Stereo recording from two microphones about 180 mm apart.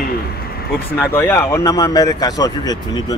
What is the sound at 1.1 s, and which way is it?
Speech, 15° left (ahead or behind).